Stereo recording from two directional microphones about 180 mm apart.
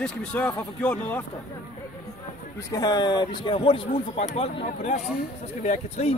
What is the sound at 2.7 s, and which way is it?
Speech, 20° left (ahead or behind).